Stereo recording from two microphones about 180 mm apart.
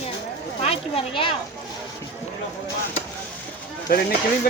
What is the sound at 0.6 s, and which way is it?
Speech, 35° left (ahead or behind).